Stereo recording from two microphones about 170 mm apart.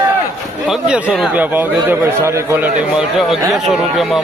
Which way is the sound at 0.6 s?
5° right (ahead or behind).